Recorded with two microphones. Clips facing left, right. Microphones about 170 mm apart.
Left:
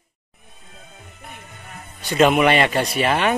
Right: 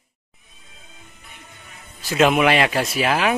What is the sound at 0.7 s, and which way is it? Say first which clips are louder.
Music: left 4 dB; 55° left (ahead or behind).